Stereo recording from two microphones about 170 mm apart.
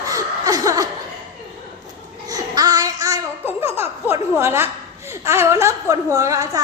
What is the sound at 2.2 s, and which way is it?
Laughter, 20° right (ahead or behind).